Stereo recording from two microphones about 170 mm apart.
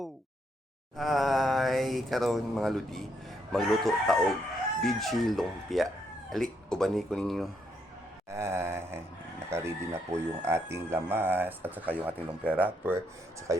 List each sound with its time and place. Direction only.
0.9 s mantra: centre (ahead or behind)
3.5 s speech: centre (ahead or behind)
8.3 s a sound: 15° right (ahead or behind)
9.5 s speech: 15° right (ahead or behind)